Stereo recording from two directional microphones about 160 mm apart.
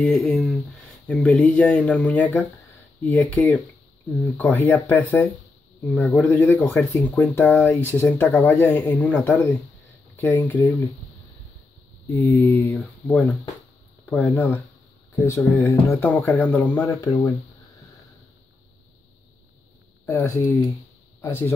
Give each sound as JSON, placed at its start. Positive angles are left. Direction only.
{"t": 0.0, "sound": "speech", "side_deg": 5}
{"t": 6.2, "sound": "speech", "side_deg": 20}
{"t": 12.1, "sound": "speech", "side_deg": 20}
{"t": 20.1, "sound": "speech", "side_deg": 15}